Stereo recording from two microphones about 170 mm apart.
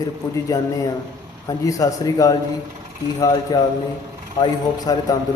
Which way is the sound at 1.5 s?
20° left (ahead or behind).